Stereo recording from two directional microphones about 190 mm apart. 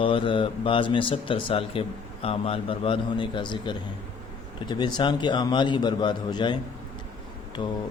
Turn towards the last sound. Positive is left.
turn(degrees=25)  # may be behind; listen again after turning